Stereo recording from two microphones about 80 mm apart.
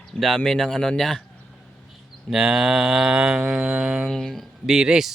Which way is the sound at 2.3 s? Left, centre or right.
Centre.